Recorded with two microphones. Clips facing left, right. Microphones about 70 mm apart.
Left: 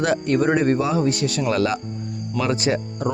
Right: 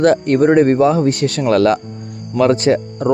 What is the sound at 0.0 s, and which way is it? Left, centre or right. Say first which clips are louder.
Speech: right 7 dB; right.